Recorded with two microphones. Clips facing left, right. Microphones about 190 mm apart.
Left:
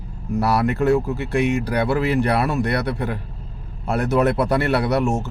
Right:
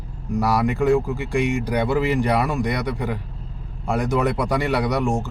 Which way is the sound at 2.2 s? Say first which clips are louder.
Left 1 dB; 15° right (ahead or behind).